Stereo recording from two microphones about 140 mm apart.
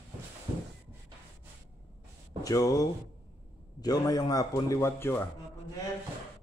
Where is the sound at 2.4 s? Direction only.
25° left (ahead or behind).